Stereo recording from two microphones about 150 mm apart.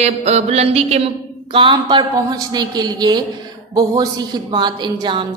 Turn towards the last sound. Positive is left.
turn(degrees=-30)  # may be behind; listen again after turning